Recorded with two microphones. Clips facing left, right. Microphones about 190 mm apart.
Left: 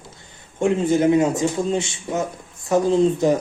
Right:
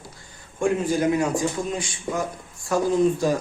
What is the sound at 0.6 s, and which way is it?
A man's voice, 25° left (ahead or behind).